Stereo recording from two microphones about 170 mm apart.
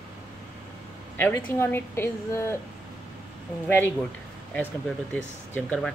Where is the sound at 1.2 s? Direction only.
15° left (ahead or behind).